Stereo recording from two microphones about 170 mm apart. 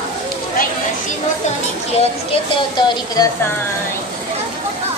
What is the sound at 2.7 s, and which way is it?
Speech, 25° left (ahead or behind).